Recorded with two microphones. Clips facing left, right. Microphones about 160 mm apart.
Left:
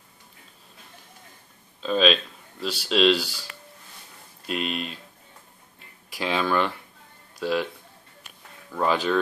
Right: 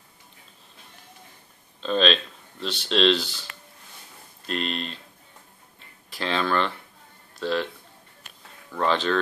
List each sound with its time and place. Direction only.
1.8 s speech: 5° left (ahead or behind)
4.5 s speech: 5° left (ahead or behind)
6.0 s speech: 10° left (ahead or behind)
8.7 s speech: 10° left (ahead or behind)